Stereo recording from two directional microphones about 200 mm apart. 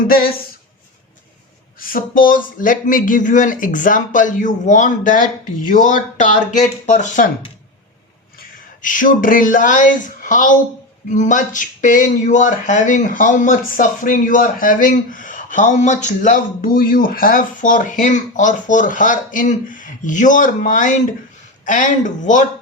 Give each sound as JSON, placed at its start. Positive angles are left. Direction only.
{"t": 1.8, "sound": "speech", "side_deg": 45}
{"t": 8.4, "sound": "speech", "side_deg": 40}